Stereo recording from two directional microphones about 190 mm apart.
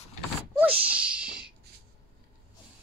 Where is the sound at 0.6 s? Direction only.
5° right (ahead or behind).